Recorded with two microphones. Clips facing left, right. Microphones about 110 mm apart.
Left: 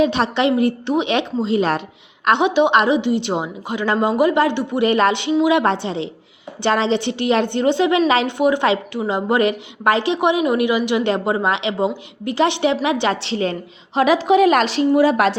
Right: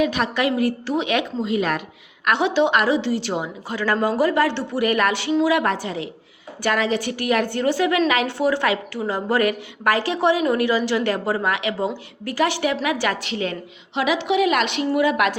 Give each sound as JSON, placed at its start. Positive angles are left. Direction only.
{"t": 0.0, "sound": "a woman's voice", "side_deg": 25}